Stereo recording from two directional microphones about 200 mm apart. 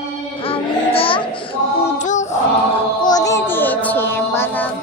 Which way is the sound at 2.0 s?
35° left (ahead or behind).